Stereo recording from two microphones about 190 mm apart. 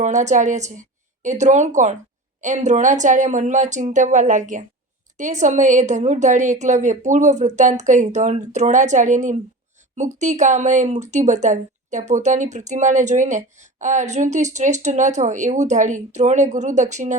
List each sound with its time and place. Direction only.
0.0 s speech: 40° right (ahead or behind)